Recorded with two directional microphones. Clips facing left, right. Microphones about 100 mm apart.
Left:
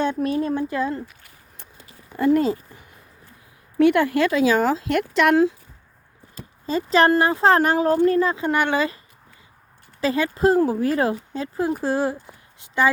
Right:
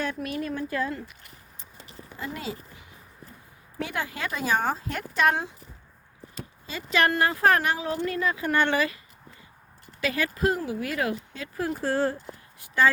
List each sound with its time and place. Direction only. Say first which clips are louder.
0.0 s speech: left 8 dB; 30° left (ahead or behind)
2.1 s speech: left 16 dB; 55° left (ahead or behind)
3.8 s speech: left 15 dB; 65° left (ahead or behind)
6.7 s speech: left 7 dB; 35° left (ahead or behind)
7.6 s speech: left 10 dB; 45° left (ahead or behind); by 8.9 s 15° left (ahead or behind)
10.0 s speech: left 6 dB; 30° left (ahead or behind)
12.5 s a sound: left 2 dB; 20° left (ahead or behind)